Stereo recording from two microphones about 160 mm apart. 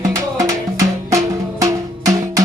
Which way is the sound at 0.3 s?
20° right (ahead or behind).